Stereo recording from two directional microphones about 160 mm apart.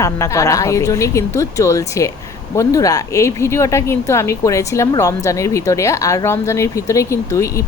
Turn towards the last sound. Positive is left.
turn(degrees=20)  # may be behind; listen again after turning